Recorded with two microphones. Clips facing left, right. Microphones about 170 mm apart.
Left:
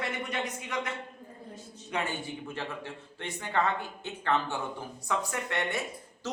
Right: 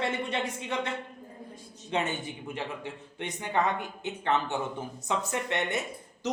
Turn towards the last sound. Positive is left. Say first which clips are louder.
# right 4 dB
turn(degrees=-20)  # may be behind; listen again after turning